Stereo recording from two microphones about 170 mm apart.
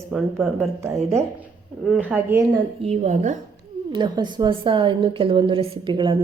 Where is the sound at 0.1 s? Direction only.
5° right (ahead or behind).